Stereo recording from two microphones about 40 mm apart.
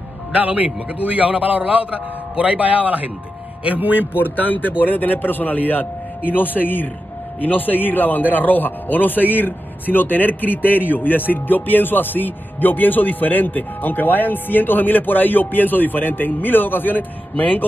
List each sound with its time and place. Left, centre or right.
0.4 s a man's voice: right
4.1 s speech: left